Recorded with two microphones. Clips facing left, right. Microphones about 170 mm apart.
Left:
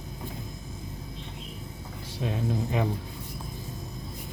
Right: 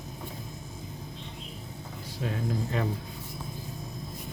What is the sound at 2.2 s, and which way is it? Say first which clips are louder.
Speech: left 2 dB; 20° left (ahead or behind).